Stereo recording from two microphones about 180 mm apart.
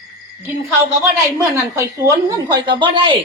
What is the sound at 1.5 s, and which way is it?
Speech, 15° right (ahead or behind).